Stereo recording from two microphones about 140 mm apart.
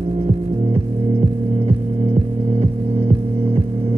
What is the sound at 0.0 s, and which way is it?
Music, 45° right (ahead or behind).